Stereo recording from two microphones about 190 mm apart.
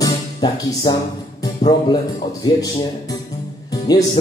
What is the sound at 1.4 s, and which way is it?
Speech, 20° left (ahead or behind).